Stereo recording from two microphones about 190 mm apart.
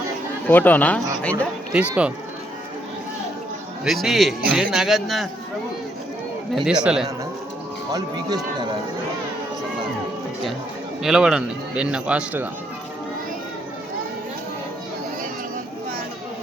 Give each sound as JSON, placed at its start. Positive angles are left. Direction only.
{"t": 0.4, "sound": "speech", "side_deg": 10}
{"t": 1.7, "sound": "speech", "side_deg": -5}
{"t": 3.8, "sound": "a man's voice", "side_deg": 0}
{"t": 6.5, "sound": "a man's voice", "side_deg": 0}
{"t": 7.9, "sound": "speech", "side_deg": -20}
{"t": 11.0, "sound": "a man's voice", "side_deg": -5}